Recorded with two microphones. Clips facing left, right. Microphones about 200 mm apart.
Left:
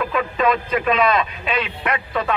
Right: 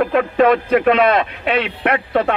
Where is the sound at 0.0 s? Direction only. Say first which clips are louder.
Right 6 dB; 55° right (ahead or behind).